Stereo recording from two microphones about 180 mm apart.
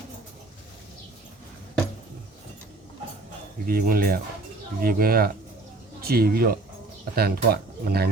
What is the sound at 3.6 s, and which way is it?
Speech, 55° right (ahead or behind).